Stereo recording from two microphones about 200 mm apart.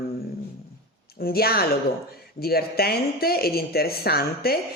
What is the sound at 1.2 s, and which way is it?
Speech, 50° left (ahead or behind).